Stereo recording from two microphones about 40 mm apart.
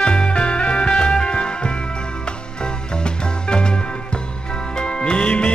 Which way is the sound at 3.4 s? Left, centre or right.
Left.